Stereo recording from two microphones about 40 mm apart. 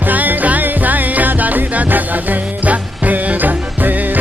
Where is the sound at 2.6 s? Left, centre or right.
Right.